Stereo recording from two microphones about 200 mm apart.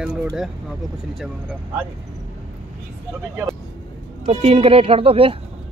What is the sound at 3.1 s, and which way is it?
Speech, 10° right (ahead or behind).